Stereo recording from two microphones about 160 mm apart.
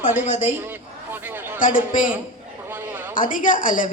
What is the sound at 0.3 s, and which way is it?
Speech, 50° left (ahead or behind).